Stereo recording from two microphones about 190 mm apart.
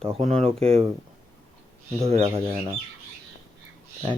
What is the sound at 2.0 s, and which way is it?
Speech, 35° right (ahead or behind).